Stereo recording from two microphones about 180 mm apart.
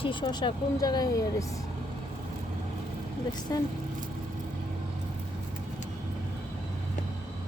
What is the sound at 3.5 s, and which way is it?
Speech, 20° left (ahead or behind).